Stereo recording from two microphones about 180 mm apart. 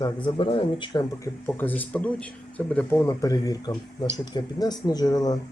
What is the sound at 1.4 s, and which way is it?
Speech, 10° left (ahead or behind).